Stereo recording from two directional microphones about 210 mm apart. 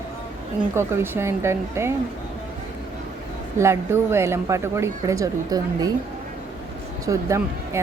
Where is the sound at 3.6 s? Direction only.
10° right (ahead or behind).